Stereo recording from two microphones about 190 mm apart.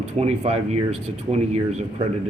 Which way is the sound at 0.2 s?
35° right (ahead or behind).